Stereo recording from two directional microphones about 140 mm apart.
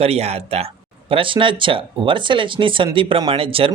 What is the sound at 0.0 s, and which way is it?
Speech, 45° right (ahead or behind).